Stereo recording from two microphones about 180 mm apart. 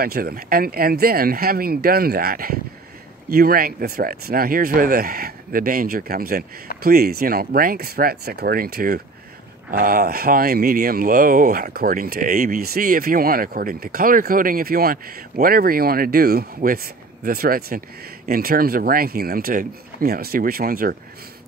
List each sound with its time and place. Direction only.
0.0 s speech: 55° right (ahead or behind)